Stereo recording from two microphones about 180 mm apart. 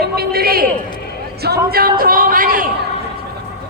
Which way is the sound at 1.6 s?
55° right (ahead or behind).